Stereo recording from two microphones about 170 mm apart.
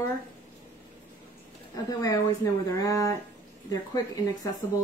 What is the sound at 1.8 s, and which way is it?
Speech, 20° left (ahead or behind).